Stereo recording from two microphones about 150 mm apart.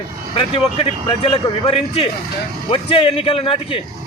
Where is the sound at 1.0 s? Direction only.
35° left (ahead or behind).